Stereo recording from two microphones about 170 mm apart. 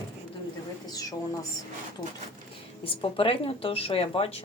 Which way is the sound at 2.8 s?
30° left (ahead or behind).